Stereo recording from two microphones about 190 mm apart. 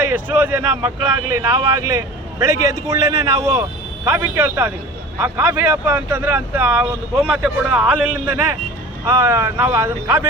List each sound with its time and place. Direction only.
0.0 s speech: 10° right (ahead or behind)